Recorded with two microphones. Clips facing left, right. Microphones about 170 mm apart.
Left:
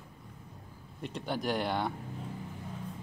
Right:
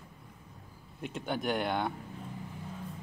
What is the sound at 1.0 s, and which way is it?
Speech, 5° right (ahead or behind).